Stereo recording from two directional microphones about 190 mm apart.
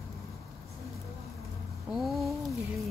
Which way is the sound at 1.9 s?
Centre (ahead or behind).